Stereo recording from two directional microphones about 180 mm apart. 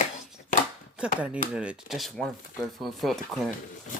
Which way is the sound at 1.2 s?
5° right (ahead or behind).